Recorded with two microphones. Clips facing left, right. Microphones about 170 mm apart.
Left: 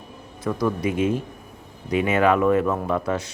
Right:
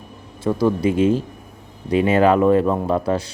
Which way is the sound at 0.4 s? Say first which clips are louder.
Right 5 dB; 30° right (ahead or behind).